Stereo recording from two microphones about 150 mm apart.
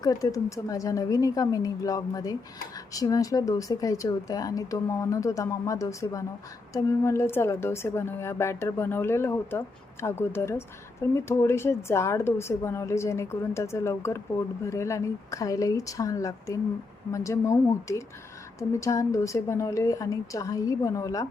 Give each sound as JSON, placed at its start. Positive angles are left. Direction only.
{"t": 0.0, "sound": "a woman's voice", "side_deg": 25}